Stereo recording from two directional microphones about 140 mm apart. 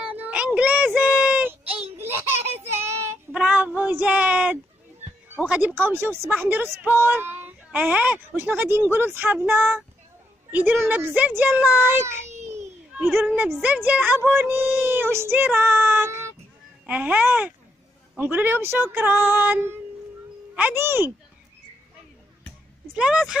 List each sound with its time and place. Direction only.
0.1 s a sound: 10° right (ahead or behind)
0.6 s child singing: 10° right (ahead or behind)
3.3 s a woman's voice: 5° right (ahead or behind)
12.3 s a sound: 55° right (ahead or behind)
13.2 s a woman's voice: 10° right (ahead or behind)
22.9 s speech: 5° right (ahead or behind)